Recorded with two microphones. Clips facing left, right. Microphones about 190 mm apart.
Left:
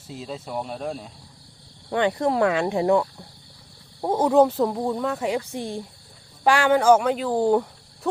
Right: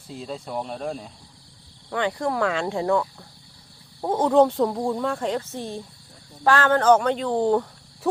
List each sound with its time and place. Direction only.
0.1 s speech: centre (ahead or behind)
1.9 s speech: 20° left (ahead or behind)